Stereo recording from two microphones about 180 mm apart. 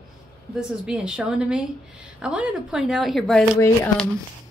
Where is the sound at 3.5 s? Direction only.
15° left (ahead or behind).